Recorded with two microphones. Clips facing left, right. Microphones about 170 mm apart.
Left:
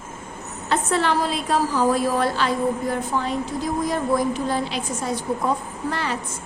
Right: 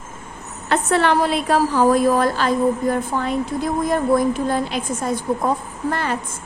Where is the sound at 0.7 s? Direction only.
65° right (ahead or behind).